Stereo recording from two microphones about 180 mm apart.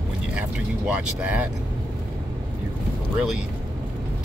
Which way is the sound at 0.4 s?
5° right (ahead or behind).